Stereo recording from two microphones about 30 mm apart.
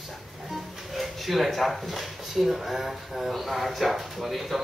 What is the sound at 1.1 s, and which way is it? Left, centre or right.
Speech, centre.